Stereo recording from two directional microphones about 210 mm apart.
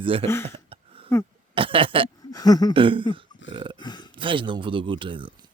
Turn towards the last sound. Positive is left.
turn(degrees=-25)  # may be behind; listen again after turning